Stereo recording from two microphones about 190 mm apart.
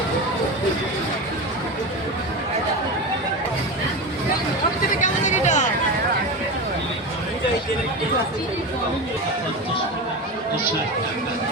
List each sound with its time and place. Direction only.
4.9 s hubbub: 40° left (ahead or behind)